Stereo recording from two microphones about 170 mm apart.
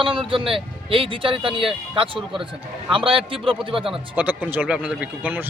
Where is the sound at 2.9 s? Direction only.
30° right (ahead or behind).